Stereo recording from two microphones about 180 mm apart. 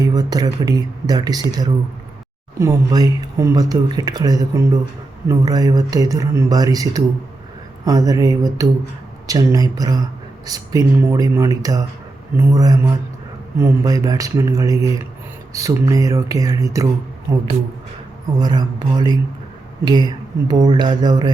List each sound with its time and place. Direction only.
0.0 s speech: 20° right (ahead or behind)